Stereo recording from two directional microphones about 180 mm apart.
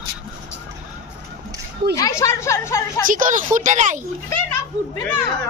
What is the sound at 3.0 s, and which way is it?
Speech, 45° right (ahead or behind).